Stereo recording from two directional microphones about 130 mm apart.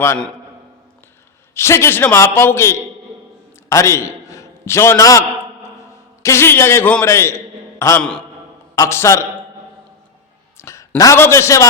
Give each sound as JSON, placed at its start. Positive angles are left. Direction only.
{"t": 1.5, "sound": "a man's voice", "side_deg": 20}
{"t": 10.6, "sound": "a man's voice", "side_deg": 20}